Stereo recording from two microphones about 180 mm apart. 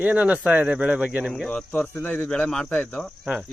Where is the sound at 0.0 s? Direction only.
5° right (ahead or behind).